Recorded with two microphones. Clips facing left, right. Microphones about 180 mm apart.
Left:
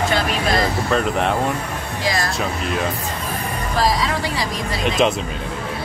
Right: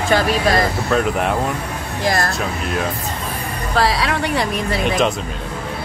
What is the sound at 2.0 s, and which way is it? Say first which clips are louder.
Speech: right 3 dB; 55° right (ahead or behind).